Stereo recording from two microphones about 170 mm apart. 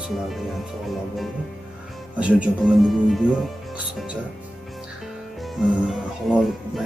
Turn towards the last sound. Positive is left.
turn(degrees=0)  # may be behind; listen again after turning